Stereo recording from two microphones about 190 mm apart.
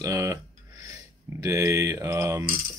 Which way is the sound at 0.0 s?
15° right (ahead or behind).